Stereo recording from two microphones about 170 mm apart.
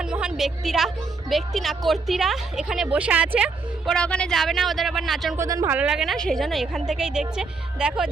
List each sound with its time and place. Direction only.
0.0 s a sound: 5° right (ahead or behind)
1.3 s a woman's voice: centre (ahead or behind)
3.9 s a woman's voice: 5° left (ahead or behind)
5.4 s speech: 20° right (ahead or behind)
5.7 s a woman's voice: 5° right (ahead or behind)